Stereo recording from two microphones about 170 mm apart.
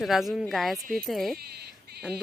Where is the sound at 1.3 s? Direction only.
70° right (ahead or behind).